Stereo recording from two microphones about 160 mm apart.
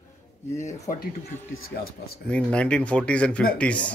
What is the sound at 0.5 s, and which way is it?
Speech, 20° left (ahead or behind).